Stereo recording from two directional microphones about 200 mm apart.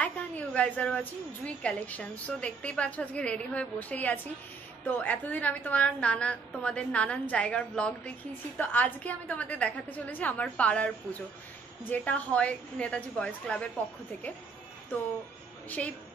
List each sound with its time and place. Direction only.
0.0 s a woman's voice: 5° left (ahead or behind)
14.9 s a woman's voice: 10° left (ahead or behind)